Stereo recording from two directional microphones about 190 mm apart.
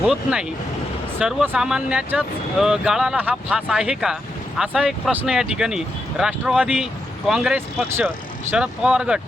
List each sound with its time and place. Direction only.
0.1 s speech: 5° right (ahead or behind)